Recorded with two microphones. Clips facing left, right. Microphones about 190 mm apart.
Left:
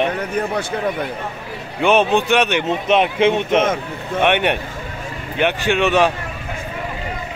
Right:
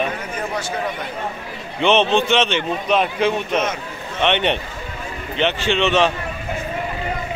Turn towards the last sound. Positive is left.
turn(degrees=10)  # may be behind; listen again after turning